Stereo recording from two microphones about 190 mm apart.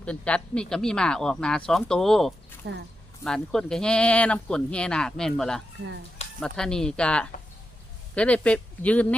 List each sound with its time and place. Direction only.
0.0 s speech: 5° left (ahead or behind)
2.6 s speech: 65° right (ahead or behind)
3.2 s speech: 5° left (ahead or behind)